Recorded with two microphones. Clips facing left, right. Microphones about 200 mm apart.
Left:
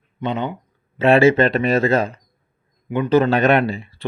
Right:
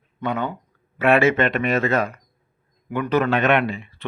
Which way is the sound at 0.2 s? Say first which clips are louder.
Left 2 dB; 20° left (ahead or behind).